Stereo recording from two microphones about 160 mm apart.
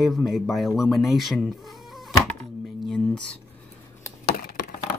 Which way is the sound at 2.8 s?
5° left (ahead or behind).